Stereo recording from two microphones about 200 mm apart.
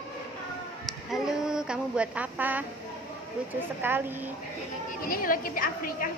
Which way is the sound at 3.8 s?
10° right (ahead or behind).